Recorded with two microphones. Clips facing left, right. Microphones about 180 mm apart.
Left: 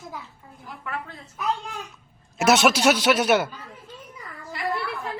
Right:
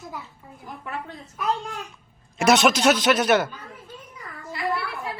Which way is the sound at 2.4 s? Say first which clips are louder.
Even; 5° left (ahead or behind).